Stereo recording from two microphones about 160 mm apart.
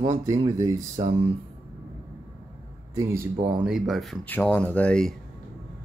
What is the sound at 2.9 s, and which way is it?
Speech, 15° right (ahead or behind).